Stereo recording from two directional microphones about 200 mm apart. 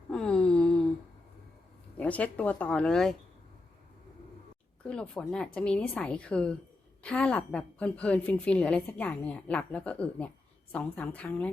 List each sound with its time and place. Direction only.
0.1 s a sound: 5° left (ahead or behind)
2.0 s a woman's voice: 5° left (ahead or behind)
4.8 s a woman's voice: 5° left (ahead or behind)